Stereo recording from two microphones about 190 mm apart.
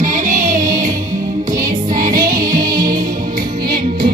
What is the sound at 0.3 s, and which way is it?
Music, 20° right (ahead or behind).